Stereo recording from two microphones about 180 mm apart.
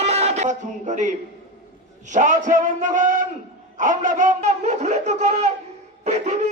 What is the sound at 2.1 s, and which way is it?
Speech, 45° right (ahead or behind).